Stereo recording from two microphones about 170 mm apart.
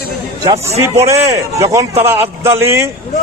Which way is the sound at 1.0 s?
15° right (ahead or behind).